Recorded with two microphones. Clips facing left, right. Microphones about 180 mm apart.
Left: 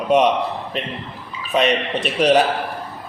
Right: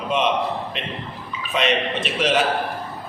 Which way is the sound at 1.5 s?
40° left (ahead or behind).